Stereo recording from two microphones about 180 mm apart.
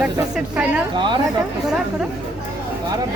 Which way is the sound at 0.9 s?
25° right (ahead or behind).